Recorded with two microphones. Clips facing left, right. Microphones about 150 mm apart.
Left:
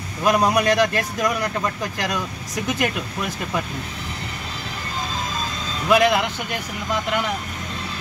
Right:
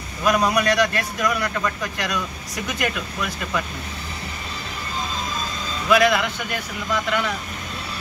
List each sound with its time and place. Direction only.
0.2 s speech: 20° left (ahead or behind)
5.9 s speech: 20° left (ahead or behind)